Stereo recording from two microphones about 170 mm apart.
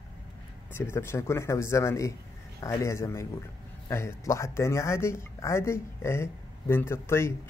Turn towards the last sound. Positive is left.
turn(degrees=15)  # may be behind; listen again after turning